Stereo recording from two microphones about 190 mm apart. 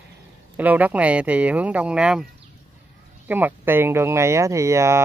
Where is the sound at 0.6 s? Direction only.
10° right (ahead or behind).